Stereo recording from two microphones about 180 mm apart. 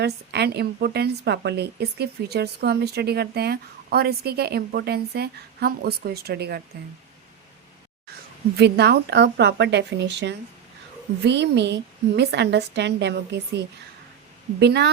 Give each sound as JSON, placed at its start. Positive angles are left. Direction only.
{"t": 0.0, "sound": "speech", "side_deg": -65}
{"t": 8.5, "sound": "a woman's voice", "side_deg": -65}
{"t": 14.6, "sound": "a woman's voice", "side_deg": -70}